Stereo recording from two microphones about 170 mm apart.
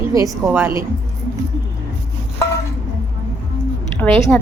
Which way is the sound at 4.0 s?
5° left (ahead or behind).